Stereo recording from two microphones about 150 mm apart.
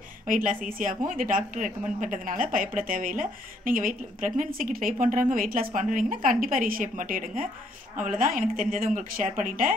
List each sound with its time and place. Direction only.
0.3 s a woman's voice: 65° right (ahead or behind)